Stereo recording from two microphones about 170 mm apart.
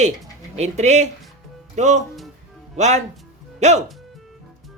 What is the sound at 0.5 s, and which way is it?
A woman's voice, 40° right (ahead or behind).